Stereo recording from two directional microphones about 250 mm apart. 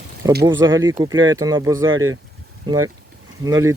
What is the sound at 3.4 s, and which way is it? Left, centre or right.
Speech, centre.